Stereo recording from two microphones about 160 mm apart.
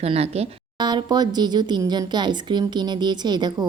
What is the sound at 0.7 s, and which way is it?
Speech, 25° right (ahead or behind).